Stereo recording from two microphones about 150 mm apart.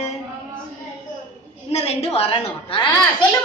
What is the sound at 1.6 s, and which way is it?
A woman's voice, 45° left (ahead or behind).